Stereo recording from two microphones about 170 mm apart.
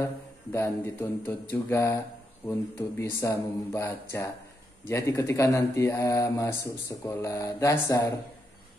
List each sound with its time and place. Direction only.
0.0 s speech: 15° left (ahead or behind)
3.0 s speech: 15° left (ahead or behind)